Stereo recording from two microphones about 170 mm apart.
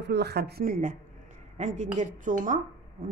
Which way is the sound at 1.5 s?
45° right (ahead or behind).